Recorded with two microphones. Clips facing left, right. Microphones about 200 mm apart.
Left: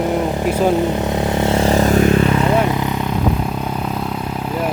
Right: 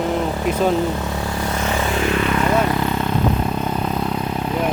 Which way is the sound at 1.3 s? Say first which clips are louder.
Left 9 dB; 25° left (ahead or behind).